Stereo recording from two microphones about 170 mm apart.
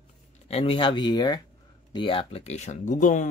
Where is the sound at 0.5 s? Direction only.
35° left (ahead or behind).